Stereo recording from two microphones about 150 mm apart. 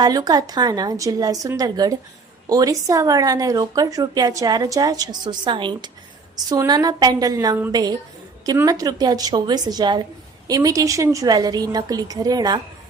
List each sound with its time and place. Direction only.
0.0 s a woman's voice: 25° right (ahead or behind)